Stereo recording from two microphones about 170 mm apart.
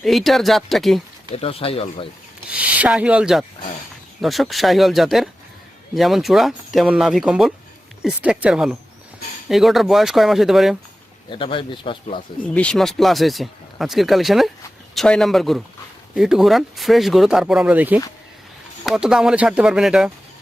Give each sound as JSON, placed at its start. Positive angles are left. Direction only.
{"t": 0.0, "sound": "speech", "side_deg": 0}
{"t": 1.4, "sound": "speech", "side_deg": 35}
{"t": 2.5, "sound": "speech", "side_deg": -10}
{"t": 11.3, "sound": "speech", "side_deg": 30}
{"t": 12.5, "sound": "speech", "side_deg": 5}